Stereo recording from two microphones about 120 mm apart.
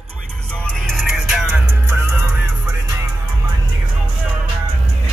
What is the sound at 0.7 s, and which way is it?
Music, 5° left (ahead or behind).